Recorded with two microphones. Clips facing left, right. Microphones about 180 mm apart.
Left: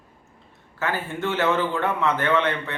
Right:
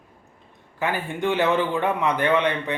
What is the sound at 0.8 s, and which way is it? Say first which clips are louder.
A man's voice: right 1 dB; 15° right (ahead or behind).